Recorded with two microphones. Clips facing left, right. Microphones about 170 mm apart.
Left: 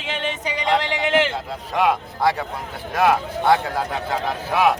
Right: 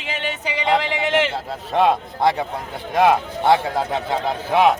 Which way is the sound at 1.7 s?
25° right (ahead or behind).